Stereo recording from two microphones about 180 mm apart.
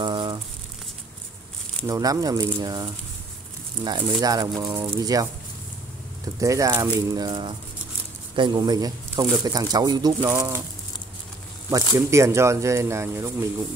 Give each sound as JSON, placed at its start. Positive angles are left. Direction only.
{"t": 0.0, "sound": "crumpling", "side_deg": -25}
{"t": 1.9, "sound": "speech", "side_deg": -20}
{"t": 6.4, "sound": "speech", "side_deg": -15}
{"t": 11.7, "sound": "speech", "side_deg": -15}